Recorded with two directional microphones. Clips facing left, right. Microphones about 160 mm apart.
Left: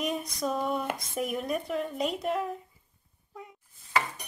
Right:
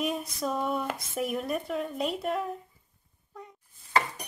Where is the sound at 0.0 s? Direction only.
5° right (ahead or behind).